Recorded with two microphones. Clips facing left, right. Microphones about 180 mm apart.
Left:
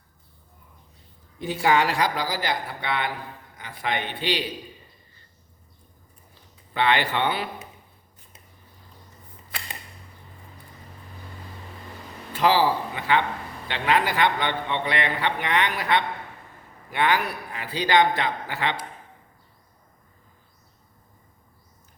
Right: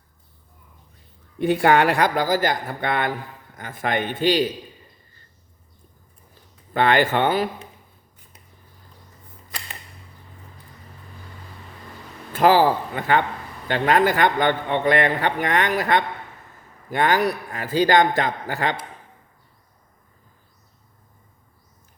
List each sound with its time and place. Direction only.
1.4 s a man's voice: 60° right (ahead or behind); by 4.4 s 45° right (ahead or behind)
6.7 s a man's voice: 45° right (ahead or behind)
12.3 s a man's voice: 50° right (ahead or behind)